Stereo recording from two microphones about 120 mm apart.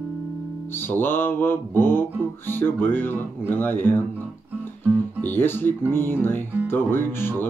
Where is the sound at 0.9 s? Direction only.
15° left (ahead or behind).